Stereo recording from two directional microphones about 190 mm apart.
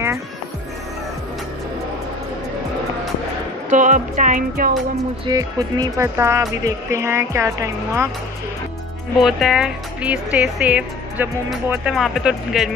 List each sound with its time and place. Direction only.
3.7 s speech: 40° right (ahead or behind)
5.2 s speech: 20° right (ahead or behind)
9.2 s speech: centre (ahead or behind)